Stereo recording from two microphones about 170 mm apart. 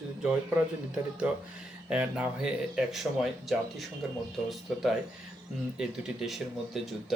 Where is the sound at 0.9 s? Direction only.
5° right (ahead or behind).